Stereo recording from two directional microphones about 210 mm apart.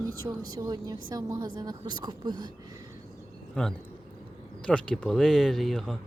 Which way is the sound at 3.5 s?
5° left (ahead or behind).